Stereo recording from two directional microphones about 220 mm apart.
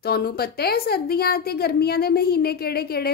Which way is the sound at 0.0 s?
45° left (ahead or behind).